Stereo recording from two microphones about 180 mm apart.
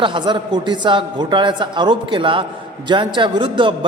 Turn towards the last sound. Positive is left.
turn(degrees=-25)  # may be behind; listen again after turning